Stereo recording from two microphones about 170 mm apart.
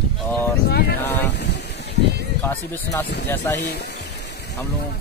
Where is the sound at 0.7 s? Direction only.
70° left (ahead or behind).